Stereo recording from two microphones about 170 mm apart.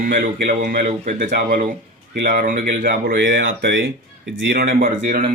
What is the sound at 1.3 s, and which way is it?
Speech, 65° right (ahead or behind).